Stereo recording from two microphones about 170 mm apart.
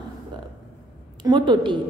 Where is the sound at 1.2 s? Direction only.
25° right (ahead or behind).